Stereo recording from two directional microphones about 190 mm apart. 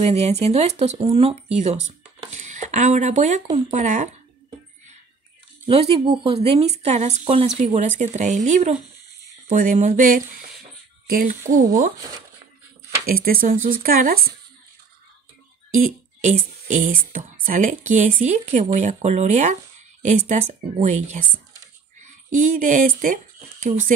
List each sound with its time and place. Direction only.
0.0 s speech: 35° right (ahead or behind)
5.7 s speech: 30° right (ahead or behind)
9.5 s a sound: 45° right (ahead or behind)
11.1 s speech: 45° right (ahead or behind)
13.0 s a sound: 50° right (ahead or behind)
15.8 s speech: 40° right (ahead or behind)